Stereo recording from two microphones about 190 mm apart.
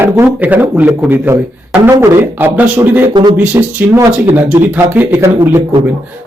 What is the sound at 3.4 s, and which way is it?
Speech, 15° right (ahead or behind).